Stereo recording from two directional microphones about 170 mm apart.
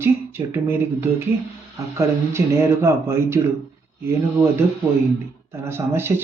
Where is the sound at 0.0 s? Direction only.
15° right (ahead or behind).